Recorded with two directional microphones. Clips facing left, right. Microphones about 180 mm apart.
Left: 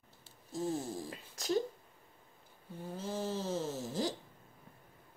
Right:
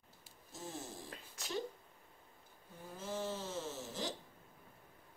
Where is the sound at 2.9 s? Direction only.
35° left (ahead or behind).